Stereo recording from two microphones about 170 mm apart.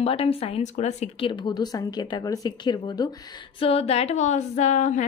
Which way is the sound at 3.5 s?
35° left (ahead or behind).